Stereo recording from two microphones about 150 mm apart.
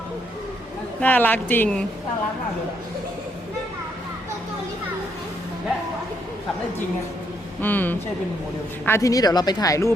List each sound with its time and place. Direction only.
1.0 s speech: 10° left (ahead or behind)
7.6 s speech: 10° left (ahead or behind)